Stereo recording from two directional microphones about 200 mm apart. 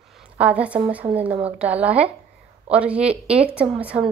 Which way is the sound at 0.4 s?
5° right (ahead or behind).